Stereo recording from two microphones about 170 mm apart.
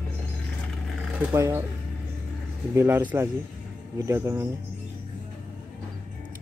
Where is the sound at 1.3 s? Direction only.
15° right (ahead or behind).